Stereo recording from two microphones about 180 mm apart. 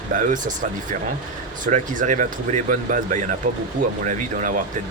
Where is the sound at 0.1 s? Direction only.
45° right (ahead or behind).